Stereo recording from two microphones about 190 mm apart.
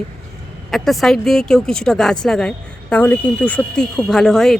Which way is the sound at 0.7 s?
Centre (ahead or behind).